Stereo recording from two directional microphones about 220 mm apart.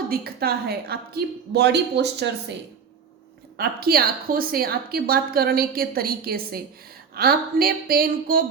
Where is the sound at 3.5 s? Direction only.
45° right (ahead or behind).